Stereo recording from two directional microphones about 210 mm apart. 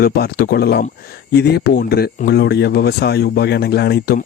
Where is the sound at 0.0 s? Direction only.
45° left (ahead or behind).